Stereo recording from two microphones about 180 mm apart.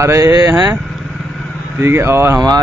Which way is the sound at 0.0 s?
15° right (ahead or behind).